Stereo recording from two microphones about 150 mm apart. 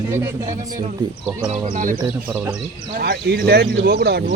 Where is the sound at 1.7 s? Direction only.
65° right (ahead or behind).